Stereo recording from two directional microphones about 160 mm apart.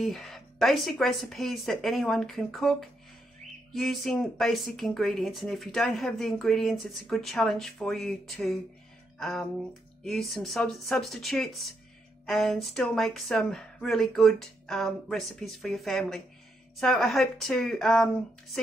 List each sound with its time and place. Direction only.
0.0 s speech: centre (ahead or behind)